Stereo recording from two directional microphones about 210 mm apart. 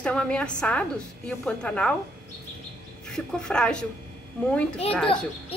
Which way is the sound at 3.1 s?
5° left (ahead or behind).